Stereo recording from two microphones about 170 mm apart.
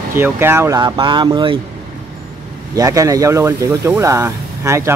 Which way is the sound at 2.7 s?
20° right (ahead or behind).